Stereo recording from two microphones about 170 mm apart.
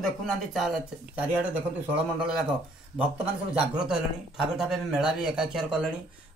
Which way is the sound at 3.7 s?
5° right (ahead or behind).